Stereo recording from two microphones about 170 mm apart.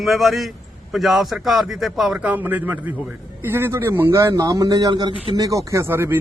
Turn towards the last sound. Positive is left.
turn(degrees=-15)  # may be behind; listen again after turning